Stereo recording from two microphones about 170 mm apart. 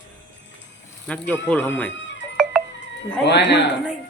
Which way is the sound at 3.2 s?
90° left.